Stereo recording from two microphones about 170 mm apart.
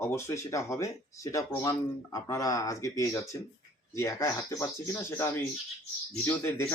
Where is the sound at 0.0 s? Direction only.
15° left (ahead or behind).